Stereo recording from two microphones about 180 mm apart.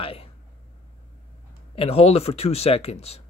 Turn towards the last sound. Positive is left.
turn(degrees=35)  # may be behind; listen again after turning